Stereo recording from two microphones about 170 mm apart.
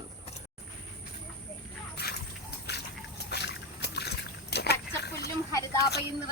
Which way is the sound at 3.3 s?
80° left.